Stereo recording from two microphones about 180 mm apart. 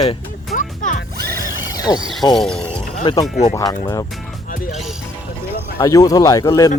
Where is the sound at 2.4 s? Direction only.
5° left (ahead or behind).